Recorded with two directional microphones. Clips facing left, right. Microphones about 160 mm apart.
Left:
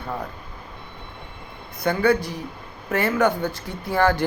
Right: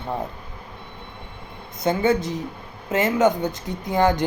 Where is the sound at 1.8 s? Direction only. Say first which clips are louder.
Even; 20° right (ahead or behind).